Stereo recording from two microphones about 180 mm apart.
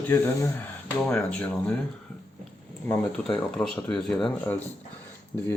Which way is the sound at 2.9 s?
5° left (ahead or behind).